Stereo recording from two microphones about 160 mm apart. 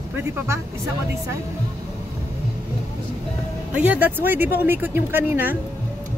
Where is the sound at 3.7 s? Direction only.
10° right (ahead or behind).